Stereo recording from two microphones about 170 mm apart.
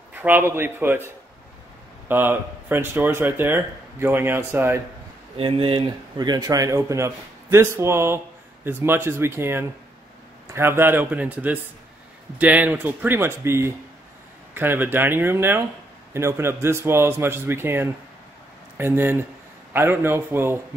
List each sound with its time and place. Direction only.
0.1 s speech: 10° right (ahead or behind)
5.4 s speech: 30° right (ahead or behind); by 20.6 s 15° right (ahead or behind)